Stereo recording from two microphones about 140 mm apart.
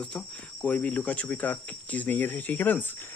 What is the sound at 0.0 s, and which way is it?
Speech, 10° left (ahead or behind).